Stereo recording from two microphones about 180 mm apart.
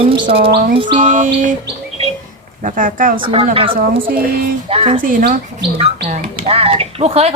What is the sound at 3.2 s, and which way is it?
A woman's voice, 30° right (ahead or behind).